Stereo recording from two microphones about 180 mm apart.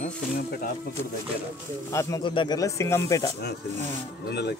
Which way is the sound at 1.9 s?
15° left (ahead or behind).